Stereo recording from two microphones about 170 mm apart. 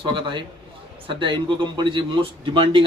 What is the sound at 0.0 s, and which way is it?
A man's voice, 30° right (ahead or behind).